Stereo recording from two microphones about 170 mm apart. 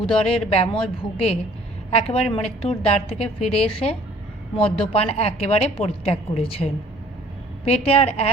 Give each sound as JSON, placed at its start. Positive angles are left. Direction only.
{"t": 0.0, "sound": "a woman's voice", "side_deg": 35}
{"t": 1.9, "sound": "a woman's voice", "side_deg": 35}